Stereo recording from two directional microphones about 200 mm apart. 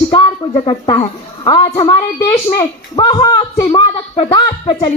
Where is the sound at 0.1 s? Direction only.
20° left (ahead or behind).